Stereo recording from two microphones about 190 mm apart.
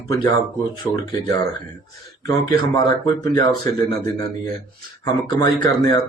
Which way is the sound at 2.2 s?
20° left (ahead or behind).